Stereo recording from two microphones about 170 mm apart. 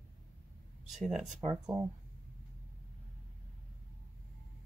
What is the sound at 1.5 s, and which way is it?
Speech, 15° right (ahead or behind).